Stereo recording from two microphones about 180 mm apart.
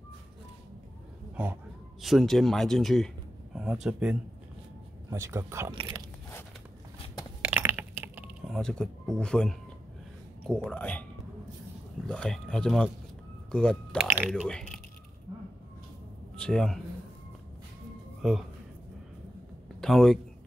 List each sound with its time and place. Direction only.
1.3 s a man's voice: 10° right (ahead or behind)
5.1 s speech: 15° right (ahead or behind)
7.4 s a sound: 10° right (ahead or behind)
9.2 s speech: 5° left (ahead or behind)
12.1 s speech: 5° left (ahead or behind)
14.0 s speech: 10° right (ahead or behind)
16.3 s speech: 5° left (ahead or behind)
18.2 s speech: centre (ahead or behind)
19.8 s speech: 5° left (ahead or behind)